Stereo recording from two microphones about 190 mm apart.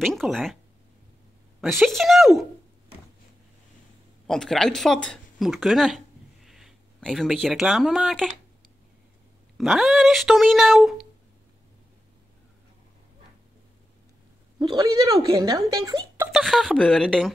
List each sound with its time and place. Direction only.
0.0 s speech: centre (ahead or behind)
1.8 s speech: centre (ahead or behind)
4.3 s a woman's voice: centre (ahead or behind)
9.6 s speech: centre (ahead or behind)
14.6 s a woman's voice: 25° right (ahead or behind)
16.3 s speech: centre (ahead or behind)